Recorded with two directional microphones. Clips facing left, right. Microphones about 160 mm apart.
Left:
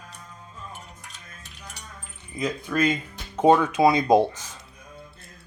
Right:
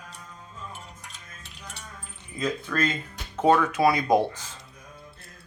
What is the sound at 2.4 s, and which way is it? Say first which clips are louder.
Speech: left 3 dB; 15° left (ahead or behind).